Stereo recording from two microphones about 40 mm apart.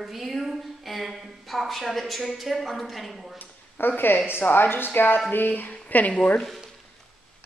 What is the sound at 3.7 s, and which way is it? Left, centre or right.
A woman's voice, left.